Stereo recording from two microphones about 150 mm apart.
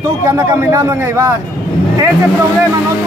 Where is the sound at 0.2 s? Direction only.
20° right (ahead or behind).